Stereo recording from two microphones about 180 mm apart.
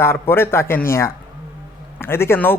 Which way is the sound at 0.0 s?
15° left (ahead or behind).